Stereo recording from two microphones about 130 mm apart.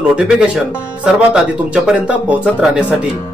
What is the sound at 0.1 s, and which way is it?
A man's voice, 5° right (ahead or behind).